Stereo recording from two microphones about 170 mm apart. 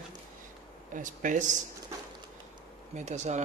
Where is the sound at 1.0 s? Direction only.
50° right (ahead or behind).